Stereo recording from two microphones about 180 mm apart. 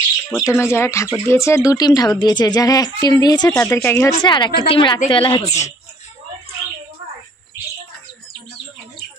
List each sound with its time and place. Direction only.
0.3 s speech: 15° left (ahead or behind)
4.2 s speech: 25° left (ahead or behind)